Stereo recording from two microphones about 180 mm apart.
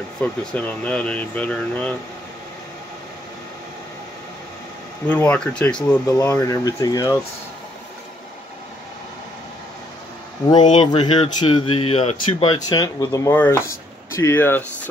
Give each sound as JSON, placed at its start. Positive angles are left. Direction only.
{"t": 0.2, "sound": "speech", "side_deg": 5}
{"t": 5.0, "sound": "speech", "side_deg": 10}
{"t": 6.0, "sound": "speech", "side_deg": 15}
{"t": 10.9, "sound": "speech", "side_deg": 25}